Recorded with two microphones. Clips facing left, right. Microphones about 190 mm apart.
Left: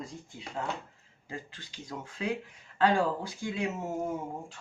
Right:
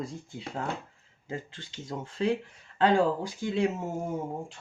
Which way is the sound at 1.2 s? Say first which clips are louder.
Right 5 dB; 25° right (ahead or behind).